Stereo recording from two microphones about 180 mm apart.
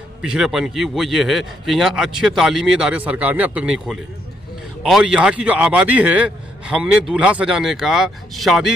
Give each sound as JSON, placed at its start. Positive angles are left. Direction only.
{"t": 0.2, "sound": "a man's voice", "side_deg": -5}